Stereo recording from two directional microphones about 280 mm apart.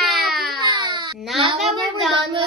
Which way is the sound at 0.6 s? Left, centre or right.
Centre.